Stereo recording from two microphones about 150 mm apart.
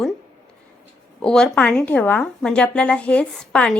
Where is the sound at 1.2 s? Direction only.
5° left (ahead or behind).